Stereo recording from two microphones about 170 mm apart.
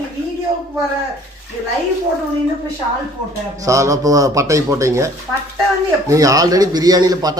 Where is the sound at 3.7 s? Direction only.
20° right (ahead or behind).